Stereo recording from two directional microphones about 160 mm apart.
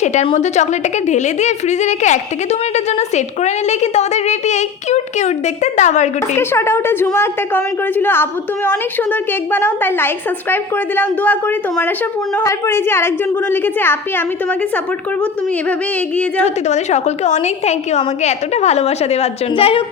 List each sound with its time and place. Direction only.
0.0 s a woman's voice: 50° left (ahead or behind)
6.3 s a woman's voice: 15° left (ahead or behind)
16.6 s a woman's voice: 45° left (ahead or behind)